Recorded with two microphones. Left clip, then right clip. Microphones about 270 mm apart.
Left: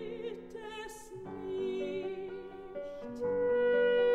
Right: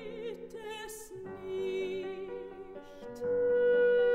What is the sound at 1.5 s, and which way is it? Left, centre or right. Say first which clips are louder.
Music: right 1 dB; right.